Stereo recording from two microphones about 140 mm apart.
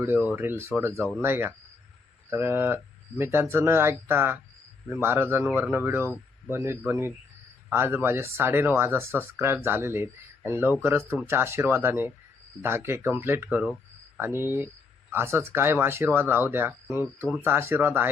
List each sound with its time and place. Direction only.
0.0 s speech: 10° right (ahead or behind)